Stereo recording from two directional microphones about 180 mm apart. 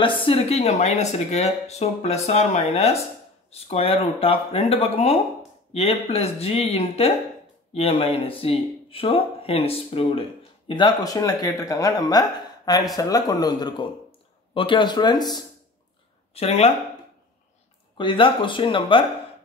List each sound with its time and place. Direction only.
0.0 s speech: 30° left (ahead or behind)
16.3 s speech: 35° left (ahead or behind)
17.9 s speech: 30° left (ahead or behind)